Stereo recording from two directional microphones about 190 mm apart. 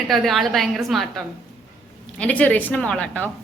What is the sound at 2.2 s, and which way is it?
A woman's voice, 10° left (ahead or behind).